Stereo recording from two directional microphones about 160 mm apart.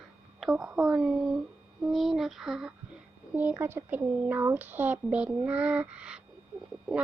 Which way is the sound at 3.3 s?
15° right (ahead or behind).